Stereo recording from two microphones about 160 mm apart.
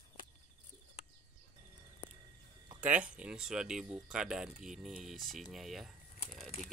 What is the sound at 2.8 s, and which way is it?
Speech, 10° right (ahead or behind).